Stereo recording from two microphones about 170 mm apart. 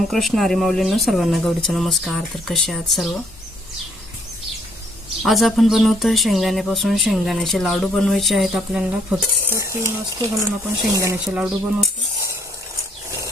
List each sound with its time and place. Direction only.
0.1 s speech: centre (ahead or behind)
5.2 s speech: centre (ahead or behind)
9.6 s speech: 15° right (ahead or behind)